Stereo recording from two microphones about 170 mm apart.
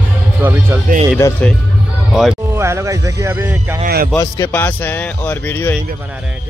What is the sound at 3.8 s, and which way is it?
Speech, 60° right (ahead or behind).